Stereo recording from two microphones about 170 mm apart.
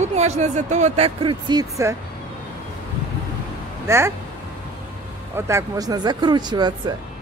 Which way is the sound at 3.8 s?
15° right (ahead or behind).